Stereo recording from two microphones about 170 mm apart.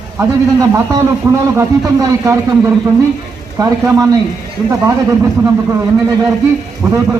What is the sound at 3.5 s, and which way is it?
Speech, 15° right (ahead or behind).